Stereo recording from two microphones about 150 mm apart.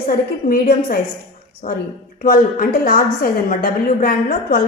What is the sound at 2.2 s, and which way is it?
A woman's voice, 70° left (ahead or behind).